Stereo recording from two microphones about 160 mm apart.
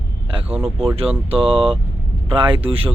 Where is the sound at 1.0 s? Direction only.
35° right (ahead or behind).